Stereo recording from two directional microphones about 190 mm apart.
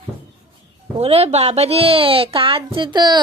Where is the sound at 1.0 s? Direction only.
30° right (ahead or behind).